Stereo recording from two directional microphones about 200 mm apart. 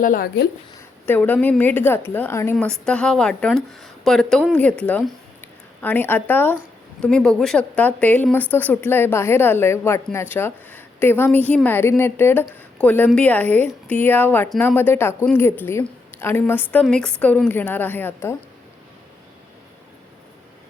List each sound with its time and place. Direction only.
0.0 s speech: 45° left (ahead or behind)
1.0 s a woman's voice: 10° left (ahead or behind)